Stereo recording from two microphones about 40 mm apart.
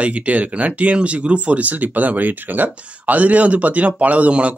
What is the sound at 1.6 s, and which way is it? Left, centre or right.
Speech, right.